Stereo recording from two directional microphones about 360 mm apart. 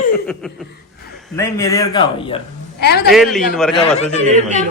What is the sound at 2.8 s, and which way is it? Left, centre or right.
Speech, left.